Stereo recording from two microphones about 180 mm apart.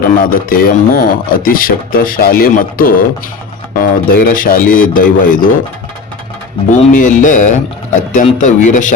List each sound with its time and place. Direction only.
0.2 s speech: 50° left (ahead or behind)
6.7 s speech: 45° left (ahead or behind)